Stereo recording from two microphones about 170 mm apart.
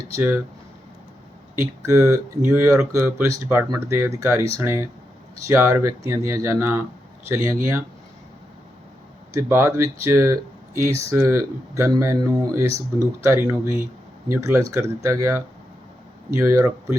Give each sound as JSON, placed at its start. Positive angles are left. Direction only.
{"t": 0.1, "sound": "speech", "side_deg": -15}
{"t": 1.5, "sound": "speech", "side_deg": -15}
{"t": 9.3, "sound": "speech", "side_deg": -15}